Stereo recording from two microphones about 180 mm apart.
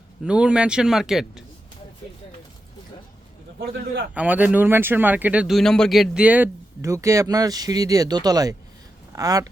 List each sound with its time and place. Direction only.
0.3 s speech: 5° right (ahead or behind)
4.1 s speech: 10° right (ahead or behind)